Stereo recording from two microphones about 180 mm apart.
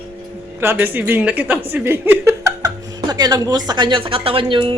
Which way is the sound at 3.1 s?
20° right (ahead or behind).